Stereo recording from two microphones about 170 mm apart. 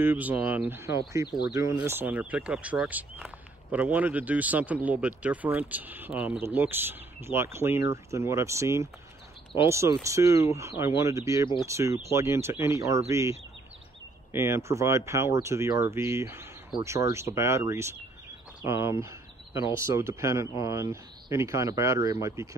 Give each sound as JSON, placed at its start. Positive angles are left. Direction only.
{"t": 0.0, "sound": "speech", "side_deg": -10}